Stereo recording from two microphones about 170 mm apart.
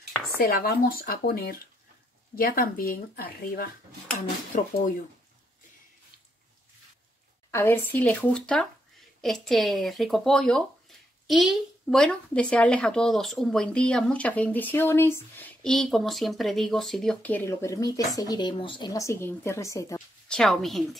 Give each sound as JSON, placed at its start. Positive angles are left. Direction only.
{"t": 0.4, "sound": "speech", "side_deg": 60}
{"t": 4.5, "sound": "speech", "side_deg": 50}
{"t": 7.5, "sound": "speech", "side_deg": 10}
{"t": 20.2, "sound": "a woman's voice", "side_deg": 5}